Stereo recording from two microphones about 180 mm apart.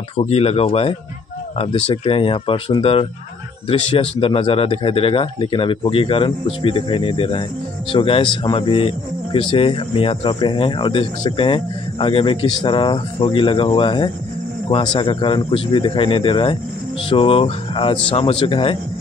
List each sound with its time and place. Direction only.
0.1 s speech: 35° left (ahead or behind)